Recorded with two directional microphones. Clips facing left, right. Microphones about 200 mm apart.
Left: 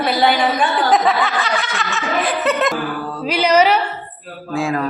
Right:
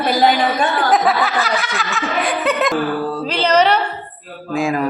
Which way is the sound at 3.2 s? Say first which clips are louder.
Left 2 dB; 10° left (ahead or behind).